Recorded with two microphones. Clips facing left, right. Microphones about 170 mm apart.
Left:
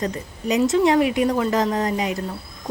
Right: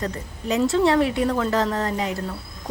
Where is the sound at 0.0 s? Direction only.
15° left (ahead or behind).